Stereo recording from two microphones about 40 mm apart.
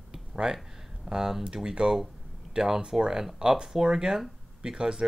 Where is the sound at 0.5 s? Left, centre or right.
Centre.